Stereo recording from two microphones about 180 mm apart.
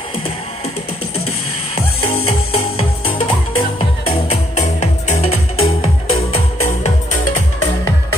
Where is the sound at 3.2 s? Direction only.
30° left (ahead or behind).